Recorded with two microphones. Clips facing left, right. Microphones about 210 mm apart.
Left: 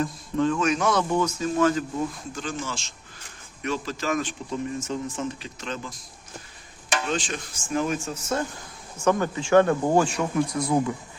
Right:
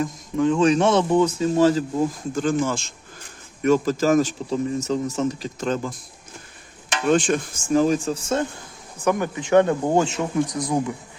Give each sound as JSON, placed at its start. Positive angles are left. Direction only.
{"t": 0.0, "sound": "speech", "side_deg": -15}
{"t": 0.6, "sound": "speech", "side_deg": -30}
{"t": 2.3, "sound": "speech", "side_deg": -50}
{"t": 7.1, "sound": "speech", "side_deg": -50}
{"t": 7.7, "sound": "speech", "side_deg": -35}
{"t": 9.0, "sound": "speech", "side_deg": -15}